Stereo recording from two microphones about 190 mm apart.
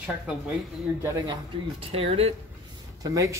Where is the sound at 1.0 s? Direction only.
15° right (ahead or behind).